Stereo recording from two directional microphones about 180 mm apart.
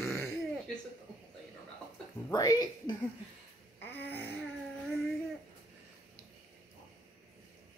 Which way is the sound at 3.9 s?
10° left (ahead or behind).